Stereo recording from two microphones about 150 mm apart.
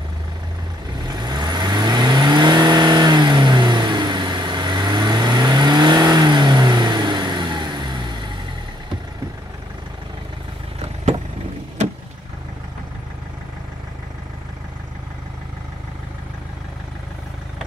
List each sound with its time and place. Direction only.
1.0 s vehicle: 30° right (ahead or behind)